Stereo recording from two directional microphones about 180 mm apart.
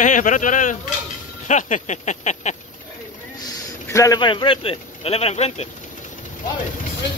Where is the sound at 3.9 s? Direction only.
20° left (ahead or behind); by 5.6 s 35° left (ahead or behind).